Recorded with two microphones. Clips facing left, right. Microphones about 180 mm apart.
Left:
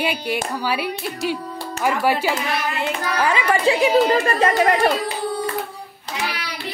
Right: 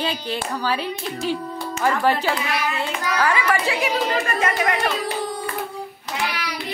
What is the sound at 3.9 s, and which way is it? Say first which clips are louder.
Speech: left 6 dB; 35° left (ahead or behind).